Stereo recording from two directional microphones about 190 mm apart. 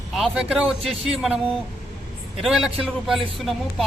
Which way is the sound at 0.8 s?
30° right (ahead or behind).